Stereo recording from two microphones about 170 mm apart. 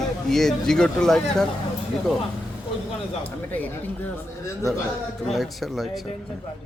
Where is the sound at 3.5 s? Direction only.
10° left (ahead or behind).